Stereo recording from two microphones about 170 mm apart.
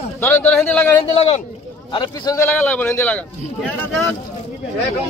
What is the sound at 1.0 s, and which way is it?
A man's voice, 35° left (ahead or behind).